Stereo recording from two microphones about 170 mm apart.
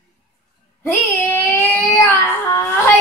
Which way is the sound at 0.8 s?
10° left (ahead or behind).